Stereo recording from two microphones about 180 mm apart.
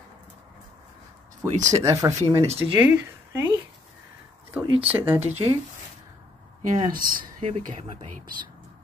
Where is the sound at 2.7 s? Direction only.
10° right (ahead or behind).